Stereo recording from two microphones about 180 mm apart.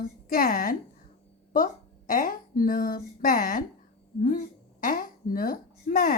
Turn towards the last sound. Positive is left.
turn(degrees=50)  # may be behind; listen again after turning